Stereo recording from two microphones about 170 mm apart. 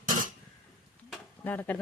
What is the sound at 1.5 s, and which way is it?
Speech, 10° left (ahead or behind).